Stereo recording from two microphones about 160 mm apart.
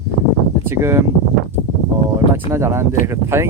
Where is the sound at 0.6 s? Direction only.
15° right (ahead or behind).